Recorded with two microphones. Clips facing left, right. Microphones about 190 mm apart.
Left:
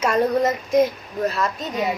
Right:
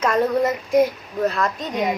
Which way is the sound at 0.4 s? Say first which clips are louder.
Even; 20° left (ahead or behind).